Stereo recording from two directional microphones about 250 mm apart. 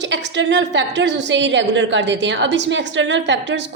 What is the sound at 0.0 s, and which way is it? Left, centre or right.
A woman's voice, right.